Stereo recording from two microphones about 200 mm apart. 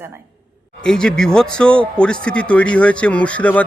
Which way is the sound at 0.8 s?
5° left (ahead or behind).